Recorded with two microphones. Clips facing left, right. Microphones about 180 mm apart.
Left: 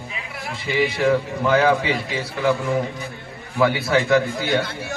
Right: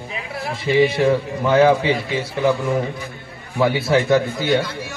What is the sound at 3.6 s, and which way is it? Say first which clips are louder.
Speech: right 2 dB; 25° right (ahead or behind).